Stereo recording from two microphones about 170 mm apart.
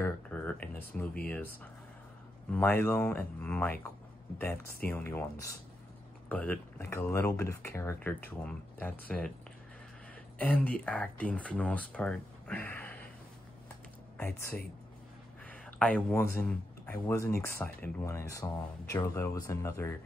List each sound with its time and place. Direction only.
0.0 s speech: 10° left (ahead or behind)
4.8 s speech: 10° left (ahead or behind)
10.4 s speech: 10° left (ahead or behind)
14.1 s speech: 10° left (ahead or behind)
15.4 s a sound: 5° left (ahead or behind)
16.3 s speech: 10° left (ahead or behind)